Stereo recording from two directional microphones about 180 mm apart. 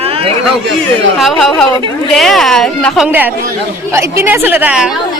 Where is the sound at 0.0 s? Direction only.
35° right (ahead or behind).